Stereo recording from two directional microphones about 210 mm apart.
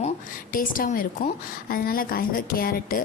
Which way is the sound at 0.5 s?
40° left (ahead or behind).